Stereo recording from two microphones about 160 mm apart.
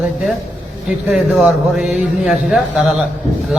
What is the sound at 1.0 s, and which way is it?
A man's voice, centre (ahead or behind).